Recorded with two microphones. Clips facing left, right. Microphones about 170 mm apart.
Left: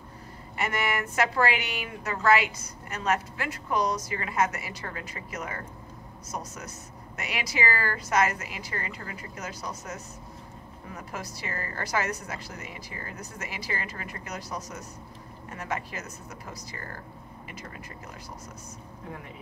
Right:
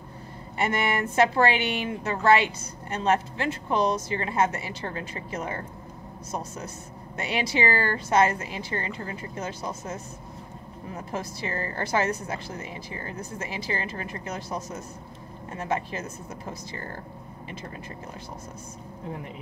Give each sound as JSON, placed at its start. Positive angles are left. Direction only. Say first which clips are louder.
{"t": 0.6, "sound": "a woman's voice", "louder": "right 4 dB", "side_deg": -25}